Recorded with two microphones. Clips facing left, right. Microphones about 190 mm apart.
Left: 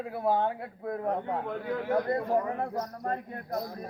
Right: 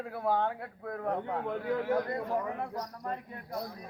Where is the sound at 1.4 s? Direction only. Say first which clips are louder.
Right 1 dB; 5° right (ahead or behind).